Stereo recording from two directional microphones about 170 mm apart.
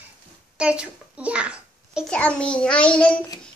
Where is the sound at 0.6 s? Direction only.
5° right (ahead or behind).